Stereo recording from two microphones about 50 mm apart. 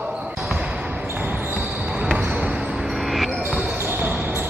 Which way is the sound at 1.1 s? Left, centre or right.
Right.